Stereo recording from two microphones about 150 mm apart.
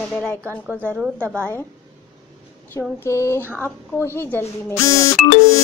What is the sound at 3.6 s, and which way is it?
Speech, 15° left (ahead or behind).